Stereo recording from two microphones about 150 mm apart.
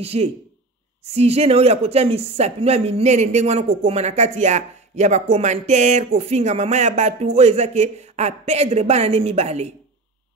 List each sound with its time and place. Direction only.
0.0 s speech: 45° right (ahead or behind)